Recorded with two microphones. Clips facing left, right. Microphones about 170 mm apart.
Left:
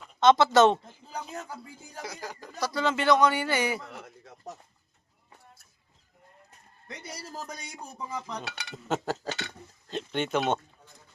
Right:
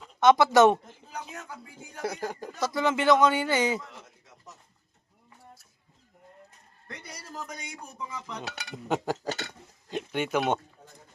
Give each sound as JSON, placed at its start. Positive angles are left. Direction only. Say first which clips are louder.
{"t": 0.2, "sound": "speech", "louder": "right 1 dB", "side_deg": -15}
{"t": 1.1, "sound": "speech", "louder": "left 2 dB", "side_deg": 35}
{"t": 2.0, "sound": "speech", "louder": "right 7 dB", "side_deg": -55}
{"t": 2.6, "sound": "speech", "louder": "right 1 dB", "side_deg": -20}
{"t": 3.9, "sound": "a sound", "louder": "left 5 dB", "side_deg": 65}
{"t": 6.8, "sound": "speech", "louder": "left 2 dB", "side_deg": 20}
{"t": 8.7, "sound": "speech", "louder": "right 1 dB", "side_deg": -15}